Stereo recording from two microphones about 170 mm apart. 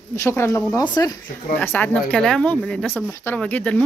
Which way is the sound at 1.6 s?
10° left (ahead or behind).